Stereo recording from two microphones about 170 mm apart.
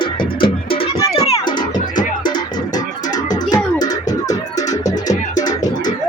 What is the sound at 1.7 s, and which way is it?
Music, 50° left (ahead or behind).